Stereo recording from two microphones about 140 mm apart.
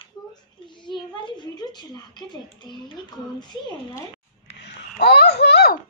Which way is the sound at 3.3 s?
30° left (ahead or behind).